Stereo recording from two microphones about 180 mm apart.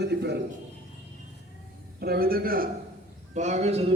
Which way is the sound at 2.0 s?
55° right (ahead or behind).